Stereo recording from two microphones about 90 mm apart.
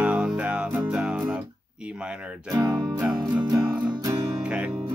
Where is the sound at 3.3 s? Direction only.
60° right (ahead or behind).